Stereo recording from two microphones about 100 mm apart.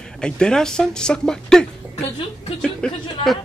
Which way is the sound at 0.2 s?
10° left (ahead or behind).